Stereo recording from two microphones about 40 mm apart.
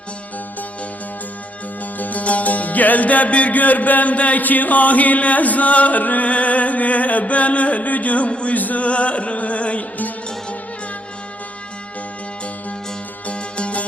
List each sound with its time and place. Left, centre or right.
1.8 s music: left
8.5 s music: left
13.2 s music: left